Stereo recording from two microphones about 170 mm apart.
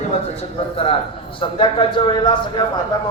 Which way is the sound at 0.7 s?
35° left (ahead or behind).